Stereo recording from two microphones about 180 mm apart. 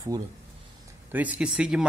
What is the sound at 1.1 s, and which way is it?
Speech, 10° right (ahead or behind).